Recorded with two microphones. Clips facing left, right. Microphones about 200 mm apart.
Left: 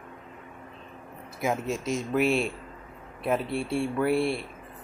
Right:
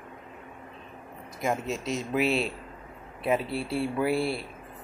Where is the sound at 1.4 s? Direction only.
Centre (ahead or behind).